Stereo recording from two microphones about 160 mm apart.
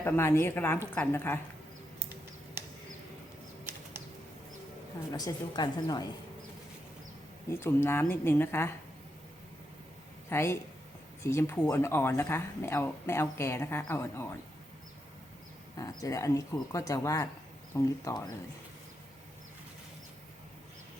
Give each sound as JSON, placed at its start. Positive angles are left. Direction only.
{"t": 0.0, "sound": "speech", "side_deg": 15}
{"t": 5.1, "sound": "speech", "side_deg": 25}
{"t": 7.5, "sound": "speech", "side_deg": 15}
{"t": 10.2, "sound": "speech", "side_deg": 15}
{"t": 15.8, "sound": "speech", "side_deg": 20}